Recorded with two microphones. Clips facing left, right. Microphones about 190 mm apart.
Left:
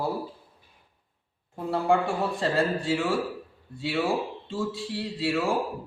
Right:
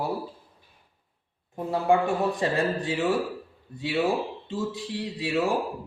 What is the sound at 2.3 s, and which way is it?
Speech, 15° right (ahead or behind).